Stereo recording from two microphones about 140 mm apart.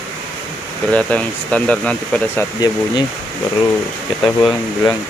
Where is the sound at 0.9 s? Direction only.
10° left (ahead or behind).